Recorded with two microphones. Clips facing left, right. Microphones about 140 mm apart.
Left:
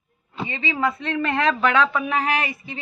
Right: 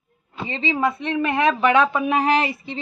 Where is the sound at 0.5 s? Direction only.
25° right (ahead or behind).